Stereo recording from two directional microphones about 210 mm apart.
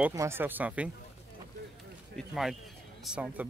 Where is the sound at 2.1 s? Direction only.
Centre (ahead or behind).